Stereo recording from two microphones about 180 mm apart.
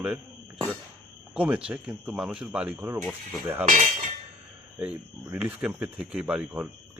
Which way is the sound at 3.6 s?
45° right (ahead or behind).